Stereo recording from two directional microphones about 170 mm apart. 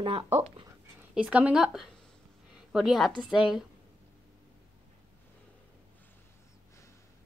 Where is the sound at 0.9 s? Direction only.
10° right (ahead or behind).